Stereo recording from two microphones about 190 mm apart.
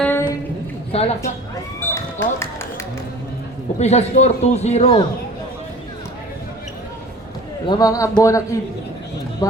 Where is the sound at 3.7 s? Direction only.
35° left (ahead or behind).